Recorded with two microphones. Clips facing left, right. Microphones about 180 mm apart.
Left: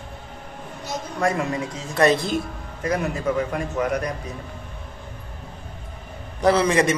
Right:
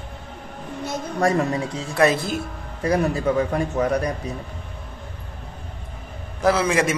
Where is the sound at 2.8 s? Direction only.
30° right (ahead or behind).